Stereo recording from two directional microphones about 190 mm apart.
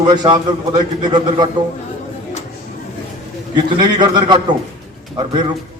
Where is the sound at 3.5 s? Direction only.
20° right (ahead or behind).